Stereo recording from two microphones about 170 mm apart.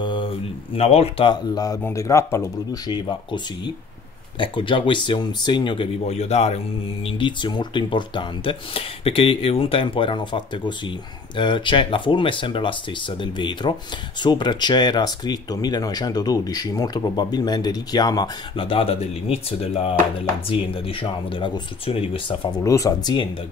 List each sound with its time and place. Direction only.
0.0 s speech: 30° left (ahead or behind)
6.0 s speech: 40° left (ahead or behind)
7.1 s speech: 30° left (ahead or behind)